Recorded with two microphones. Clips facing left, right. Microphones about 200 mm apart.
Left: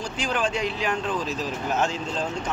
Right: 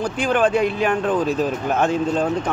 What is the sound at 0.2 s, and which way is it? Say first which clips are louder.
Speech: right 8 dB; 55° right (ahead or behind).